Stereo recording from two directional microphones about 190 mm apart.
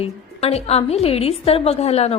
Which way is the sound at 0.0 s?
30° left (ahead or behind).